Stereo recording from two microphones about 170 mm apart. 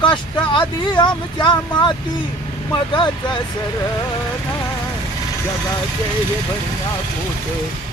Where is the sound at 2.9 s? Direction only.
25° left (ahead or behind).